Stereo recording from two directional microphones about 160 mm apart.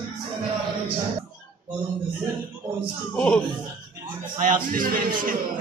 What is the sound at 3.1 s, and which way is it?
Speech, 10° left (ahead or behind).